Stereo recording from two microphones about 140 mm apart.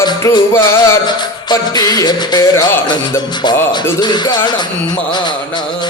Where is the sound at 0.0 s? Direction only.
25° left (ahead or behind).